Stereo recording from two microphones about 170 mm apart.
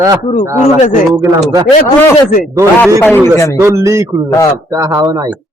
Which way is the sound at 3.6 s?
15° right (ahead or behind).